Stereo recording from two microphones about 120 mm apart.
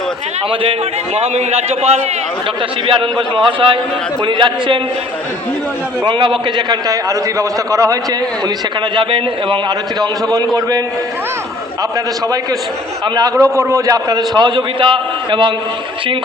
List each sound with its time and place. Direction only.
0.6 s a man's voice: 55° right (ahead or behind)
2.8 s a man's voice: 45° right (ahead or behind)
6.1 s a man's voice: 40° right (ahead or behind)
9.0 s a man's voice: 45° right (ahead or behind)
13.1 s a man's voice: 25° right (ahead or behind)